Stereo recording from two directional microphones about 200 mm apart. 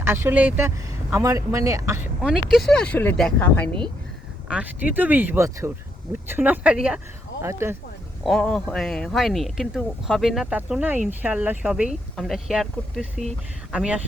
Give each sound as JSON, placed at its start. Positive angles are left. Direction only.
{"t": 0.0, "sound": "speech", "side_deg": -10}
{"t": 2.2, "sound": "speech", "side_deg": -5}
{"t": 4.4, "sound": "speech", "side_deg": -5}
{"t": 8.2, "sound": "speech", "side_deg": 5}